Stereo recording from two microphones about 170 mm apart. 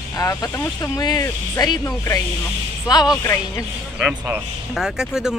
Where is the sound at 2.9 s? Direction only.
25° left (ahead or behind).